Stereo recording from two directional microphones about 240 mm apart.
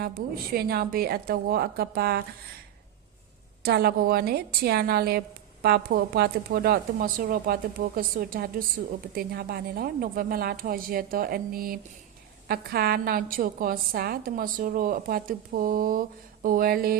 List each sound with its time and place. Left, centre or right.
0.0 s a woman's voice: right
3.6 s a woman's voice: right